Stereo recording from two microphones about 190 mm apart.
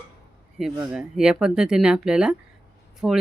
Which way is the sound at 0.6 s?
5° right (ahead or behind).